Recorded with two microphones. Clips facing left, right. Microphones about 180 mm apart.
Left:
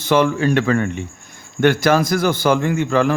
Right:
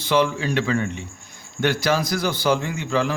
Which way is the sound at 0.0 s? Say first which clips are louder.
Left 5 dB; 50° left (ahead or behind).